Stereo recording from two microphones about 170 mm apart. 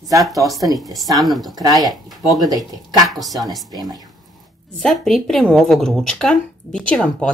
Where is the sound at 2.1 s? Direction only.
Centre (ahead or behind).